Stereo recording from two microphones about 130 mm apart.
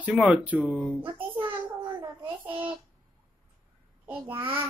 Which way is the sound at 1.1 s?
40° right (ahead or behind).